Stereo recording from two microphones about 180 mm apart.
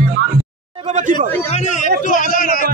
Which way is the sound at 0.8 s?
45° right (ahead or behind).